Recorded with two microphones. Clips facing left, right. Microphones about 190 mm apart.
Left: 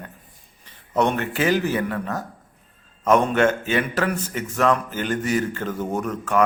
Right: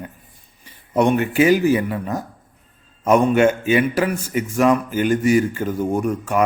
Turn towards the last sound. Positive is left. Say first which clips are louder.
# right 2 dB
turn(degrees=-10)  # may be behind; listen again after turning